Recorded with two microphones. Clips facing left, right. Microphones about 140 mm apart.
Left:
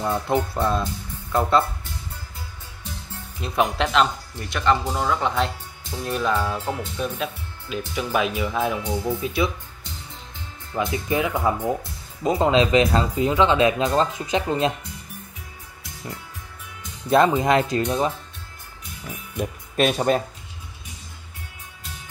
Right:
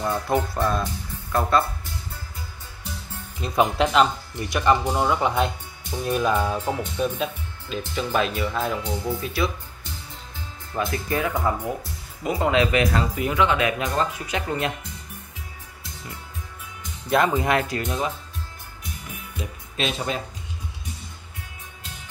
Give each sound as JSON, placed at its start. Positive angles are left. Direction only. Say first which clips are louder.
{"t": 0.0, "sound": "speech", "louder": "left 1 dB", "side_deg": 20}
{"t": 3.3, "sound": "speech", "louder": "right 2 dB", "side_deg": 0}
{"t": 7.7, "sound": "speech", "louder": "even", "side_deg": 10}
{"t": 10.8, "sound": "speech", "louder": "left 2 dB", "side_deg": 15}
{"t": 17.1, "sound": "speech", "louder": "left 3 dB", "side_deg": 25}
{"t": 19.3, "sound": "speech", "louder": "left 9 dB", "side_deg": 50}